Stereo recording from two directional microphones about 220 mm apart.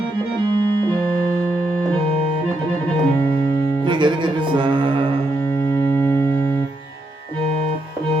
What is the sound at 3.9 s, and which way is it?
Music, 20° right (ahead or behind).